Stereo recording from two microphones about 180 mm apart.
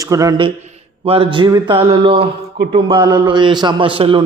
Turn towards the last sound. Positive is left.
turn(degrees=-30)  # may be behind; listen again after turning